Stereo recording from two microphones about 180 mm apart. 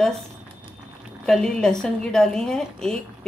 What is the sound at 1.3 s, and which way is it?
Speech, 5° left (ahead or behind).